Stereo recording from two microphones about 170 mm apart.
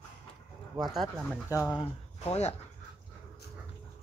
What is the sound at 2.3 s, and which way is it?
Speech, 40° left (ahead or behind).